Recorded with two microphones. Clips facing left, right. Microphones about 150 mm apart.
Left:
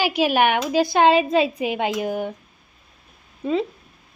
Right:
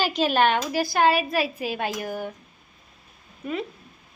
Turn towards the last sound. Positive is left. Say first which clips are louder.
# left 8 dB
turn(degrees=25)  # may be behind; listen again after turning